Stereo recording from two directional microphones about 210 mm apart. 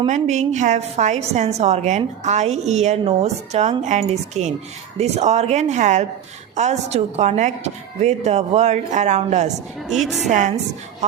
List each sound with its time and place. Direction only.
0.0 s a woman's voice: 35° right (ahead or behind)
9.8 s a woman's voice: centre (ahead or behind)
10.2 s a woman's voice: 35° right (ahead or behind)